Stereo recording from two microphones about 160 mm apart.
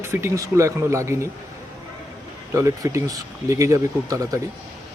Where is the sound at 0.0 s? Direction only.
15° right (ahead or behind).